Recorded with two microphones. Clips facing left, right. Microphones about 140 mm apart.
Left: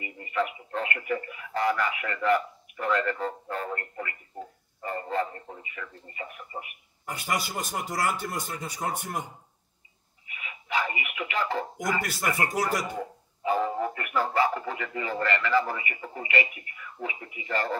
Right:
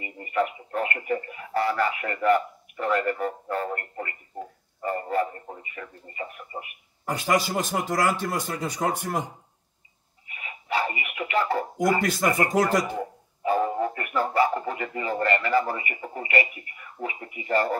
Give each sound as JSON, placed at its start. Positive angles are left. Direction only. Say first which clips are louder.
{"t": 0.0, "sound": "radio", "louder": "right 3 dB", "side_deg": -35}
{"t": 0.7, "sound": "speech", "louder": "right 3 dB", "side_deg": -40}
{"t": 3.5, "sound": "a sound", "louder": "right 4 dB", "side_deg": -40}
{"t": 6.0, "sound": "radio", "louder": "right 4 dB", "side_deg": -35}
{"t": 7.1, "sound": "a man's voice", "louder": "right 7 dB", "side_deg": -90}
{"t": 10.2, "sound": "radio", "louder": "right 3 dB", "side_deg": -40}
{"t": 12.6, "sound": "a man's voice", "louder": "right 5 dB", "side_deg": -90}
{"t": 13.4, "sound": "music", "louder": "right 3 dB", "side_deg": -40}
{"t": 13.7, "sound": "a sound", "louder": "right 2 dB", "side_deg": -35}
{"t": 15.6, "sound": "radio", "louder": "right 3 dB", "side_deg": -35}